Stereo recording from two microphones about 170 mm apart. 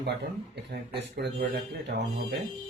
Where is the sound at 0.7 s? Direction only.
75° right (ahead or behind).